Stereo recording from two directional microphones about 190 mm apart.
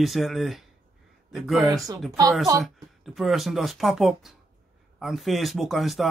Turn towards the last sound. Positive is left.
turn(degrees=0)  # may be behind; listen again after turning